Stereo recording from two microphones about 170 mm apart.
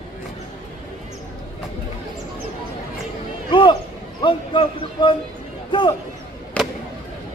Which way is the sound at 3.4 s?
30° left (ahead or behind).